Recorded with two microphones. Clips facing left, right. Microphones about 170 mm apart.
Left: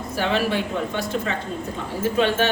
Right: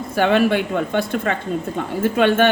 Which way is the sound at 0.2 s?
60° right (ahead or behind).